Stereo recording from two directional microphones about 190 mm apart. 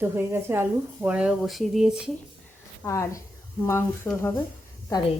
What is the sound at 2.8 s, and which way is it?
Speech, 15° left (ahead or behind).